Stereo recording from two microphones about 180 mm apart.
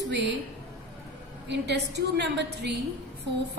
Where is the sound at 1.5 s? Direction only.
70° right (ahead or behind).